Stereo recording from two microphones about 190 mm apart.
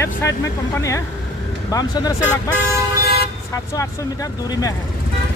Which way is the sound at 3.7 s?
20° left (ahead or behind).